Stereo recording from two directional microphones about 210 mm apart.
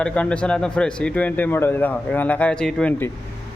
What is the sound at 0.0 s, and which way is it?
A man's voice, 5° left (ahead or behind).